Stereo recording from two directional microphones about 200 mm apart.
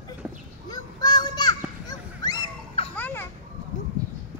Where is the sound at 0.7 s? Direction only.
20° left (ahead or behind).